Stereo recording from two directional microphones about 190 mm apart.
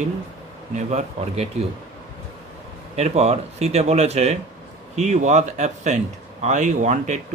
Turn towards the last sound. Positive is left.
turn(degrees=-40)  # may be behind; listen again after turning